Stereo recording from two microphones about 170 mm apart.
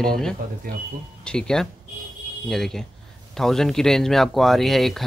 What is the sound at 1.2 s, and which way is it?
Speech, 5° left (ahead or behind).